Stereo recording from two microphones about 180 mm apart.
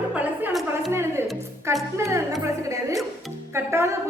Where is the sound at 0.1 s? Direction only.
5° right (ahead or behind).